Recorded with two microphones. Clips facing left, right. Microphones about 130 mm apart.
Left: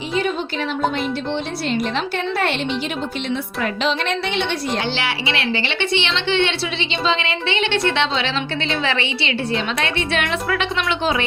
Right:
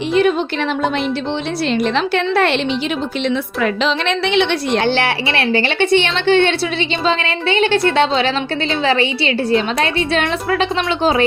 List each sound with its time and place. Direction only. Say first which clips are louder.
0.1 s speech: right 8 dB; 70° right (ahead or behind)
2.0 s a woman's voice: right 6 dB; 90° right
3.8 s a woman's voice: right 3 dB; 90° right; by 11.3 s 35° right (ahead or behind)